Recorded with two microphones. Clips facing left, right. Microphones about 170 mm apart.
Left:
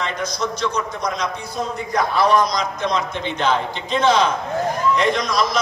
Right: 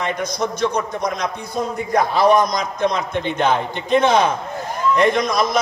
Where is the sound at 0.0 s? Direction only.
55° right (ahead or behind).